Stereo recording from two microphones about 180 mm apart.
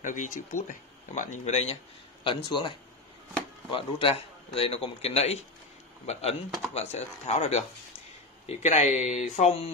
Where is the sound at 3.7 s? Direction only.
30° left (ahead or behind).